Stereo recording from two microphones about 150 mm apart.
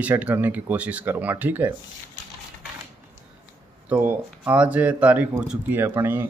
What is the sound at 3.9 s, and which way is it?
Speech, 15° right (ahead or behind).